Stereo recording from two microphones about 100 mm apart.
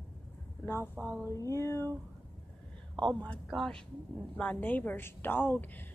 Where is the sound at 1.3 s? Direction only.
30° left (ahead or behind).